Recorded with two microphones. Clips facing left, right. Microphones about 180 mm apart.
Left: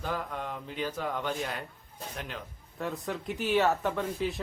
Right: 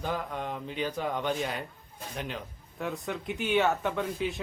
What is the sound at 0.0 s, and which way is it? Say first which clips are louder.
Mantra: right 2 dB; 5° right (ahead or behind).